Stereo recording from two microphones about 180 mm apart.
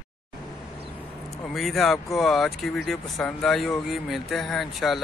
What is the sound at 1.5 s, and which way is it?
Vehicle, centre (ahead or behind).